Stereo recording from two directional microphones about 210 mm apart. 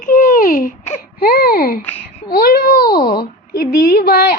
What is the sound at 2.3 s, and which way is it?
Babbling, 45° left (ahead or behind).